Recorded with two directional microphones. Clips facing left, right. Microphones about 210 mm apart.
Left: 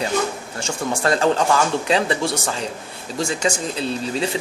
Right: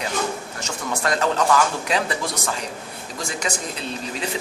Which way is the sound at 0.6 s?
30° left (ahead or behind).